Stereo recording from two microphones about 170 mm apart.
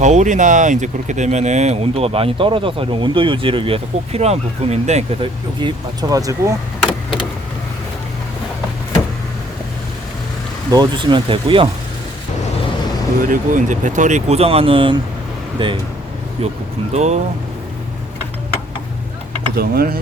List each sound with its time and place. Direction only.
0.0 s speech: 45° right (ahead or behind)
5.5 s speech: 25° right (ahead or behind)
10.7 s speech: 25° right (ahead or behind)
13.2 s speech: 50° right (ahead or behind)
19.5 s speech: 65° right (ahead or behind)